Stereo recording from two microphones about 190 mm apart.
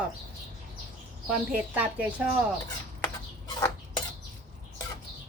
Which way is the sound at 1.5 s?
10° right (ahead or behind).